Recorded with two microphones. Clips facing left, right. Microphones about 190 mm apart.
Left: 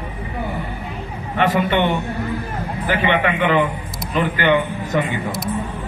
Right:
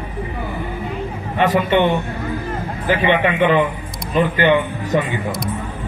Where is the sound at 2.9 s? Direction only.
20° right (ahead or behind).